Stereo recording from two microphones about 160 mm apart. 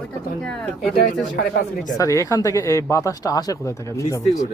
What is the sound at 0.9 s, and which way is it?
Speech, 65° left (ahead or behind).